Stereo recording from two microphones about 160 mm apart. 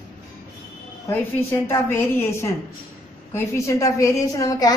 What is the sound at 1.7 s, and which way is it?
A woman's voice, 15° left (ahead or behind).